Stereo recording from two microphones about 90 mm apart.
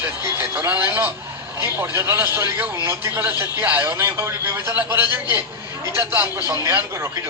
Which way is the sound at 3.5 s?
20° right (ahead or behind).